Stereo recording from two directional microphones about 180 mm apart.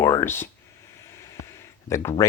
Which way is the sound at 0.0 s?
15° left (ahead or behind).